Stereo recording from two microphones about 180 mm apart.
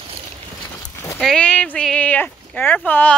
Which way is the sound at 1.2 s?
5° left (ahead or behind).